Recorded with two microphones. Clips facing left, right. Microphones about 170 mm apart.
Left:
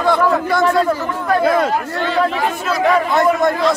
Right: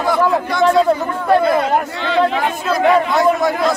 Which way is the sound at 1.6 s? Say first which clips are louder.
Even; 50° left (ahead or behind).